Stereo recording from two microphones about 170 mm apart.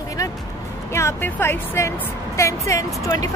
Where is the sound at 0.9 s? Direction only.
15° left (ahead or behind).